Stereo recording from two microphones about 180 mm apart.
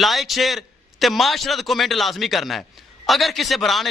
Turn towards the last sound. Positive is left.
turn(degrees=0)  # may be behind; listen again after turning